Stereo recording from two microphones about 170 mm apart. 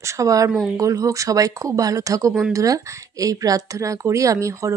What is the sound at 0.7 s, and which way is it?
Speech, 20° right (ahead or behind).